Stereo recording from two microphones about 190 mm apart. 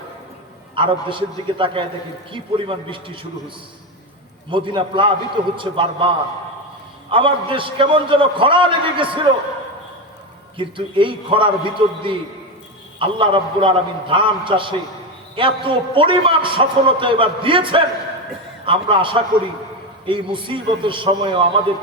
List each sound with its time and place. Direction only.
0.8 s a man's voice: 25° right (ahead or behind)
4.5 s a man's voice: 25° right (ahead or behind)
7.1 s a man's voice: 25° right (ahead or behind)
10.6 s a man's voice: 25° right (ahead or behind)